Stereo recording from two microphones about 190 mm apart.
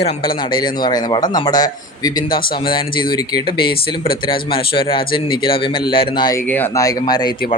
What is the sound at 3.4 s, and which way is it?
Speech, 50° left (ahead or behind).